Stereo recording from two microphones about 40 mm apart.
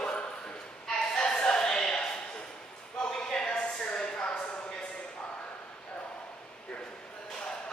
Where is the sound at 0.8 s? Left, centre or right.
Centre.